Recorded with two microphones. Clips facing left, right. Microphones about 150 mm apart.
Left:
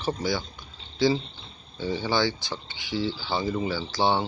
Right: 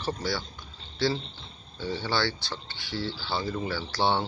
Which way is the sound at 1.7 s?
15° left (ahead or behind).